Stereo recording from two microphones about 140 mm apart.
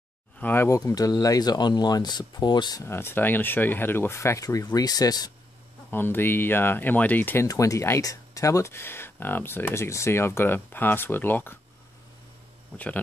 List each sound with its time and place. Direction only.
0.4 s speech: 15° left (ahead or behind)
5.9 s speech: 15° left (ahead or behind)
7.4 s speech: 25° left (ahead or behind)
12.7 s speech: 10° left (ahead or behind)